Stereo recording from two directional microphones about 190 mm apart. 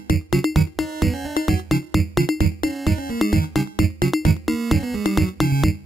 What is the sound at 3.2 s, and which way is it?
Music, centre (ahead or behind).